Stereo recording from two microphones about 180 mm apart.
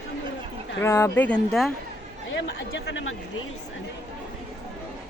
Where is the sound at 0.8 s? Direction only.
15° left (ahead or behind).